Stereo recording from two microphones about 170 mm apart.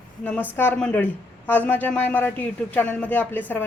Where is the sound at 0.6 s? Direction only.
10° left (ahead or behind).